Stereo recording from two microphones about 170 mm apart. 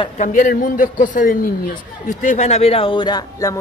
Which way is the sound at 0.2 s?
50° left (ahead or behind).